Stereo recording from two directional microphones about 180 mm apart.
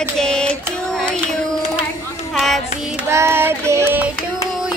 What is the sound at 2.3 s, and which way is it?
Music, centre (ahead or behind).